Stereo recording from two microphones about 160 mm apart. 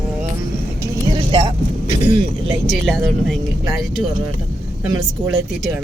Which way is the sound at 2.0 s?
30° right (ahead or behind).